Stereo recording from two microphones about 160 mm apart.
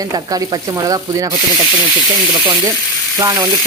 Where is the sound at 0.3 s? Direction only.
25° right (ahead or behind).